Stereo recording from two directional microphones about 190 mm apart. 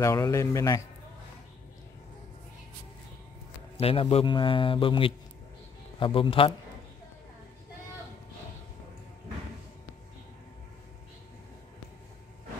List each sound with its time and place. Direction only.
0.0 s a man's voice: 15° left (ahead or behind)
3.7 s speech: 30° left (ahead or behind)